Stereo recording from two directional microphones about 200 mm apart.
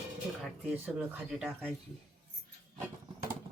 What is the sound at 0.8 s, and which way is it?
Speech, 5° right (ahead or behind).